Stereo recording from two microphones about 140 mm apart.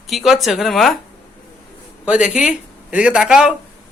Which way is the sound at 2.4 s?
5° right (ahead or behind).